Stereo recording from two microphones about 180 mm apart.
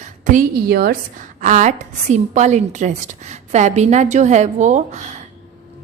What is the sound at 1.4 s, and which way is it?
A woman's voice, 45° right (ahead or behind).